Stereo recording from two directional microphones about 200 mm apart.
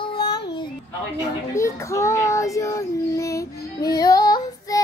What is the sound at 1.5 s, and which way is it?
Child singing, 15° left (ahead or behind).